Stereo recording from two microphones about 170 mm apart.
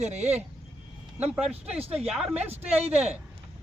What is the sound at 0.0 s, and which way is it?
Speech, 40° right (ahead or behind).